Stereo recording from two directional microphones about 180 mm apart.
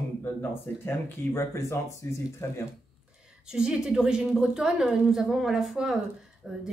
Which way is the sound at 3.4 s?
5° right (ahead or behind).